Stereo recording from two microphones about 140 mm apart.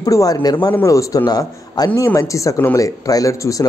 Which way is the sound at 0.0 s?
25° left (ahead or behind).